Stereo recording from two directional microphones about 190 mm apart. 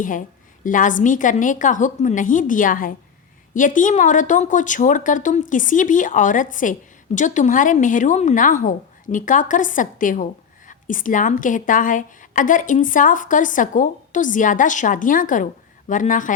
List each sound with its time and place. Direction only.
0.0 s a woman's voice: 45° left (ahead or behind)